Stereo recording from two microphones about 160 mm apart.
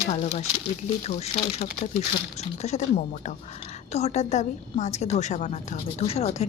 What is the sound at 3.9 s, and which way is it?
A woman's voice, 45° left (ahead or behind).